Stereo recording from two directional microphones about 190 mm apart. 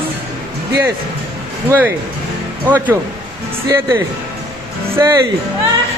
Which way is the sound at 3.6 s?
15° right (ahead or behind).